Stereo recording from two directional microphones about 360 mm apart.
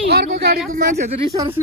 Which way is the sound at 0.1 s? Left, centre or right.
Right.